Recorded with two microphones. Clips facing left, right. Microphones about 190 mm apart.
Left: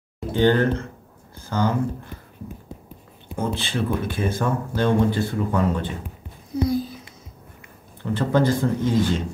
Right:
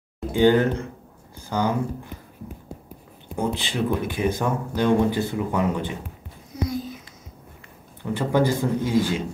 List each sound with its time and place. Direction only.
0.3 s speech: 10° right (ahead or behind)
3.3 s speech: 15° right (ahead or behind)
6.5 s a sound: 35° left (ahead or behind)
8.0 s speech: 15° right (ahead or behind)